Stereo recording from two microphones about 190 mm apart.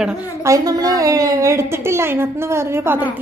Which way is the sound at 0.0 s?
10° right (ahead or behind).